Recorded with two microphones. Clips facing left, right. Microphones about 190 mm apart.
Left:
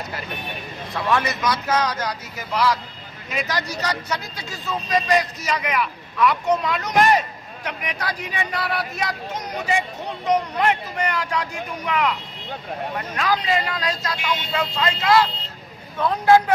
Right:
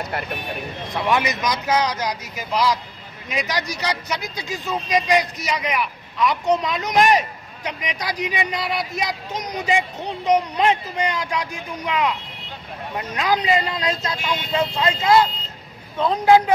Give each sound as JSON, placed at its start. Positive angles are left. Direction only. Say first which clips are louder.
{"t": 0.9, "sound": "speech", "louder": "right 1 dB", "side_deg": -15}